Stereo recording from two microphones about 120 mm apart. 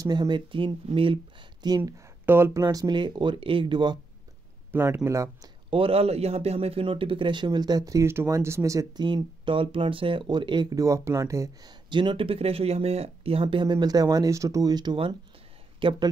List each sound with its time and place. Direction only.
0.0 s speech: 35° right (ahead or behind)
2.2 s speech: 20° right (ahead or behind)
2.6 s speech: 35° right (ahead or behind)
4.7 s speech: 20° right (ahead or behind)
5.7 s speech: 50° right (ahead or behind); by 11.7 s 25° right (ahead or behind)
11.9 s speech: 40° right (ahead or behind)